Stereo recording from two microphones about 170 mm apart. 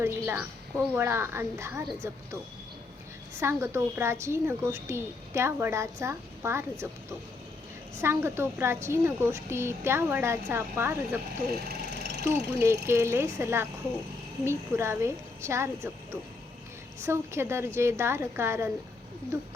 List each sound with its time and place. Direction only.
0.0 s a woman's voice: 10° right (ahead or behind)
3.4 s a woman's voice: 15° right (ahead or behind)
8.0 s a woman's voice: 15° right (ahead or behind)
11.8 s a sound: 80° right
12.2 s a woman's voice: 15° right (ahead or behind)
17.0 s a woman's voice: 15° right (ahead or behind)